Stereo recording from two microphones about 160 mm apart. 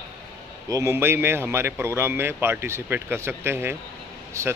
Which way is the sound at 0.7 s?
20° right (ahead or behind).